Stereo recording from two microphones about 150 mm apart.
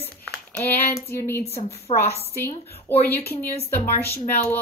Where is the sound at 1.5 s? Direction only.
45° left (ahead or behind).